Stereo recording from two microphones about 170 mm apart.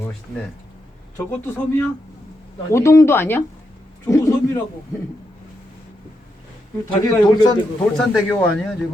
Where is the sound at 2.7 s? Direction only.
15° left (ahead or behind).